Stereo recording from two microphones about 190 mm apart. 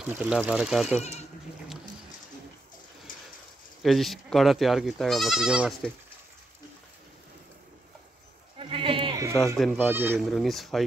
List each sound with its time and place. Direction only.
0.0 s speech: 5° right (ahead or behind)
3.1 s a sound: 45° left (ahead or behind)
3.8 s speech: centre (ahead or behind)
8.5 s sheep: 30° right (ahead or behind)
9.6 s speech: centre (ahead or behind)